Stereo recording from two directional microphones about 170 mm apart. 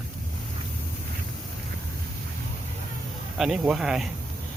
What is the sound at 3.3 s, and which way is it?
Speech, 5° right (ahead or behind).